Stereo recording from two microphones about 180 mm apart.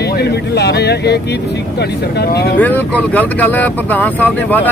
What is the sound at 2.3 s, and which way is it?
Speech, 65° left (ahead or behind).